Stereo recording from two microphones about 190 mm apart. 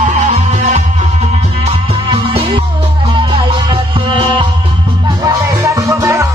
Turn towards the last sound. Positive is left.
turn(degrees=-15)  # may be behind; listen again after turning